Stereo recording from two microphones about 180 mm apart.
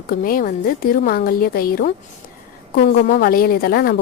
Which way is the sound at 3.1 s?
55° left (ahead or behind).